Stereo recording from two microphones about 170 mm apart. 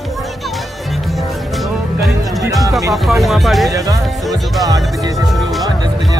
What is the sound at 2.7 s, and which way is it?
Speech, 20° right (ahead or behind).